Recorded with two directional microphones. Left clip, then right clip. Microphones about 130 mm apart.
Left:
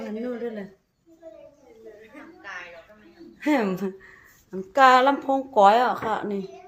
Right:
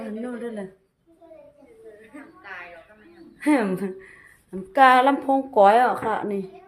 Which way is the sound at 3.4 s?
20° right (ahead or behind).